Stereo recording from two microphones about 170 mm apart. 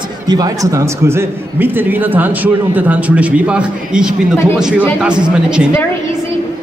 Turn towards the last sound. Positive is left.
turn(degrees=-5)  # may be behind; listen again after turning